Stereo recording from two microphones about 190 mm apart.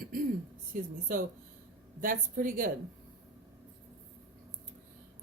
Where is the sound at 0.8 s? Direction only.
45° right (ahead or behind).